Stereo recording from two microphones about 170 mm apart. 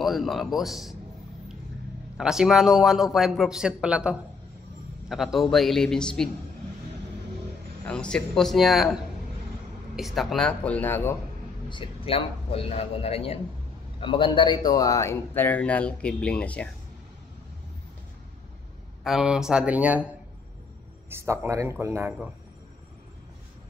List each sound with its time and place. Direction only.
0.0 s a man's voice: centre (ahead or behind)
2.1 s a man's voice: 5° right (ahead or behind)
7.8 s a man's voice: 5° left (ahead or behind)
11.7 s a man's voice: 30° left (ahead or behind); by 16.6 s 5° left (ahead or behind)
19.0 s speech: centre (ahead or behind)